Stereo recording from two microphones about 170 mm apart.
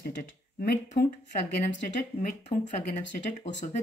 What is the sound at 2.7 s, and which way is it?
Speech, 45° left (ahead or behind).